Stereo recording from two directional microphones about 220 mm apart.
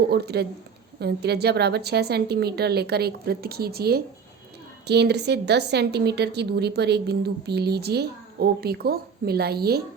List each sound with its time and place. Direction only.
0.1 s a woman's voice: 45° right (ahead or behind)